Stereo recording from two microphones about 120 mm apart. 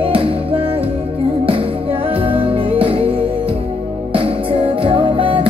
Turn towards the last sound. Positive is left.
turn(degrees=-45)  # may be behind; listen again after turning